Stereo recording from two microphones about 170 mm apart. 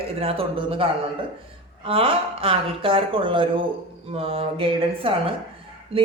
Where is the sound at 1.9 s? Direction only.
35° right (ahead or behind).